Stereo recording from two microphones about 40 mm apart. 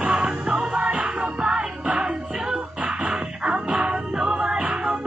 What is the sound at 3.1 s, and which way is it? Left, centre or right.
Music, right.